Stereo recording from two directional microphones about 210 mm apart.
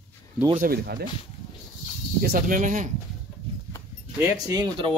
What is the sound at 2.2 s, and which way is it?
Speech, 45° right (ahead or behind).